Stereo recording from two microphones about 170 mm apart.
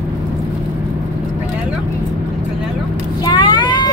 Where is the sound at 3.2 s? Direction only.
25° left (ahead or behind).